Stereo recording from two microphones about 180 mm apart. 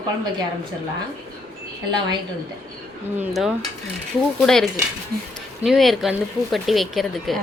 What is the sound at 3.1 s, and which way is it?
Speech, centre (ahead or behind).